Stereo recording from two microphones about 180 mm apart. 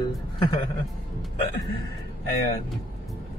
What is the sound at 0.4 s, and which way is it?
Speech, 25° left (ahead or behind).